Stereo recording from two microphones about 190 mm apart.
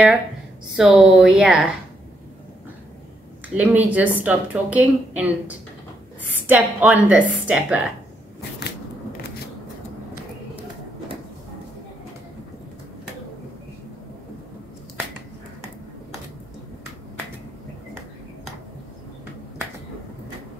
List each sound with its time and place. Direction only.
0.7 s speech: centre (ahead or behind)
3.5 s a woman's voice: 5° right (ahead or behind)
8.4 s shuffling cards: 60° left (ahead or behind)